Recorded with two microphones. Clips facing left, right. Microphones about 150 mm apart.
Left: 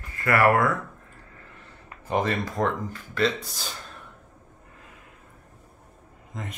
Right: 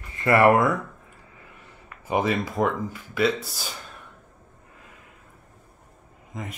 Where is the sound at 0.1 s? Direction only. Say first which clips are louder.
Right 3 dB; 25° right (ahead or behind).